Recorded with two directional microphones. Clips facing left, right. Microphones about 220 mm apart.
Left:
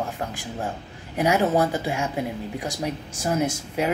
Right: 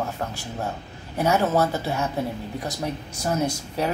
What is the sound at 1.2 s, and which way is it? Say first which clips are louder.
Speech: left 1 dB; 15° left (ahead or behind).